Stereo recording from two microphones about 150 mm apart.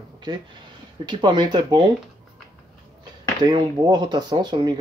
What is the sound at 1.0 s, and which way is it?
Speech, 30° right (ahead or behind).